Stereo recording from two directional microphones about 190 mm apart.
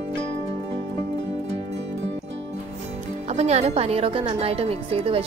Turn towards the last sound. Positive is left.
turn(degrees=-30)  # may be behind; listen again after turning